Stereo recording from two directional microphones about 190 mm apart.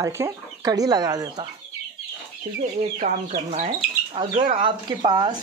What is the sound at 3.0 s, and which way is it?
Speech, 40° right (ahead or behind).